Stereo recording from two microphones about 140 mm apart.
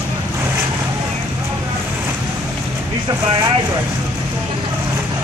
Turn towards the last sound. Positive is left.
turn(degrees=-25)  # may be behind; listen again after turning